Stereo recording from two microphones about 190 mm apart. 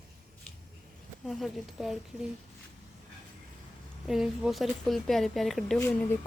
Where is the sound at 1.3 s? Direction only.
Centre (ahead or behind).